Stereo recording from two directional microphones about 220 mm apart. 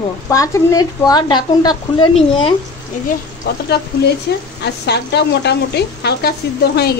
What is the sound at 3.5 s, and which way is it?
Speech, 45° left (ahead or behind).